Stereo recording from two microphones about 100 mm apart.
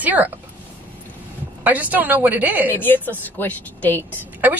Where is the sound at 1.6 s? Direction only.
15° right (ahead or behind).